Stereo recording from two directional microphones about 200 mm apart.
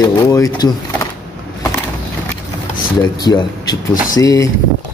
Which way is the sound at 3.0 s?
20° left (ahead or behind).